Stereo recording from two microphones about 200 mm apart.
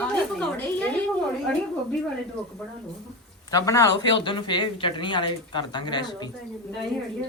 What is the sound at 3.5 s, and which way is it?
Speech, 15° left (ahead or behind).